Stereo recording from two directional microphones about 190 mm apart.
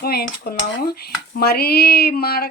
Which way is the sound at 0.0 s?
55° left (ahead or behind).